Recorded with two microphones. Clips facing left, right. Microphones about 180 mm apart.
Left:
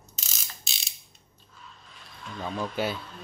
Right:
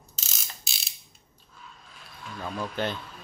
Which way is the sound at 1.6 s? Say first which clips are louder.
Right 1 dB; centre (ahead or behind).